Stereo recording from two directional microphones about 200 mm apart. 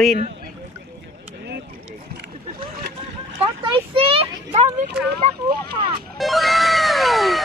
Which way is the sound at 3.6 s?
25° right (ahead or behind).